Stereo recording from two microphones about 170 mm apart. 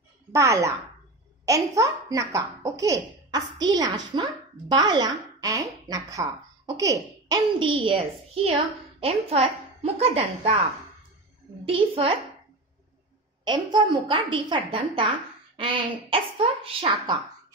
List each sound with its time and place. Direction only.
0.3 s a child's voice: 15° right (ahead or behind); by 12.1 s 35° right (ahead or behind)
13.4 s speech: 25° right (ahead or behind)